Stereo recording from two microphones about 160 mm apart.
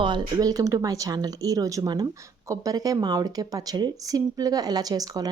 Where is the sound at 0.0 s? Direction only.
30° right (ahead or behind).